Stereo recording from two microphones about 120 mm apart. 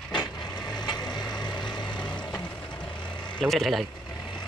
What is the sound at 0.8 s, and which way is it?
Vehicle, 35° left (ahead or behind).